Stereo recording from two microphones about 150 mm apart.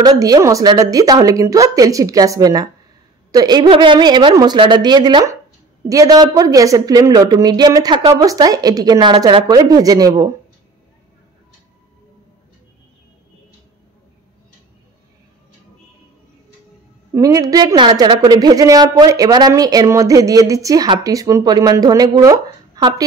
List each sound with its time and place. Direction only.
0.0 s a woman's voice: 25° right (ahead or behind)
17.1 s a woman's voice: 20° right (ahead or behind)